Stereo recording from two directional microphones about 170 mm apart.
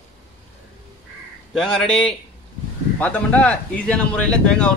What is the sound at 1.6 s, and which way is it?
Speech, 5° left (ahead or behind).